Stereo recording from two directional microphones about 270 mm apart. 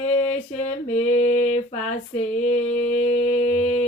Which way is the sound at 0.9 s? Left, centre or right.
Left.